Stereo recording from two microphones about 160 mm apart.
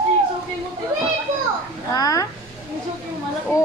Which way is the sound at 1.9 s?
20° left (ahead or behind).